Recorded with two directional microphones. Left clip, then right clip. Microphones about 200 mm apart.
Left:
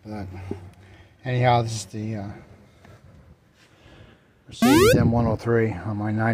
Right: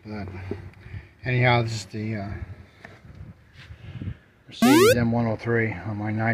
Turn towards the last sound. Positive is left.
turn(degrees=20)  # may be behind; listen again after turning